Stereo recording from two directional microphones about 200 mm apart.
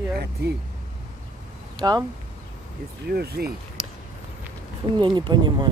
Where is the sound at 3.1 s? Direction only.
55° right (ahead or behind).